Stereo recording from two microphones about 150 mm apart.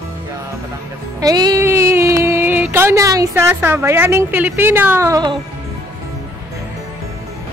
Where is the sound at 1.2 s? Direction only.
25° right (ahead or behind).